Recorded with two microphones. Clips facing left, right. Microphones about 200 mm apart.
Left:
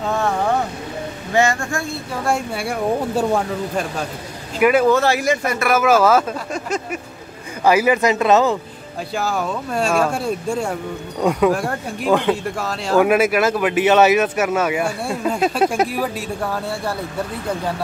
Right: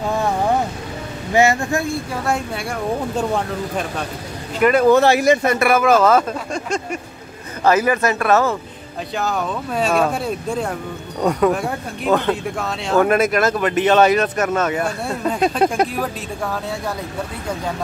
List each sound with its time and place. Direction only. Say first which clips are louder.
1.3 s speech: right 2 dB; 20° right (ahead or behind)
2.2 s speech: left 4 dB; centre (ahead or behind)
4.9 s speech: right 4 dB; 20° right (ahead or behind)
5.7 s speech: even; 5° left (ahead or behind)
9.1 s speech: even; 5° left (ahead or behind)